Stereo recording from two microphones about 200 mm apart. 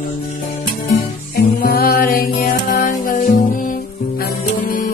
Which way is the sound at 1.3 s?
45° left (ahead or behind).